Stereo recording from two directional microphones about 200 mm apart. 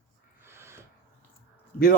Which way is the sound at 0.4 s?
15° right (ahead or behind).